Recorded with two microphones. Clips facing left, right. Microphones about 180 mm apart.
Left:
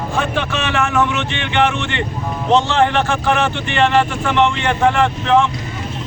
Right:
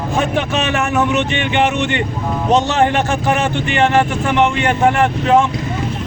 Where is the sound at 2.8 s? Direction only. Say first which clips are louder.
Right 1 dB; 20° right (ahead or behind).